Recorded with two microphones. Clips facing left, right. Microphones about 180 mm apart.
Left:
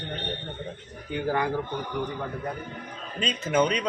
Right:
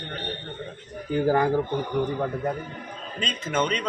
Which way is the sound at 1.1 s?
40° right (ahead or behind).